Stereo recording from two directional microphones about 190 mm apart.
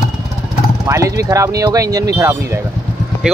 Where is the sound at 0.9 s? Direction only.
15° right (ahead or behind).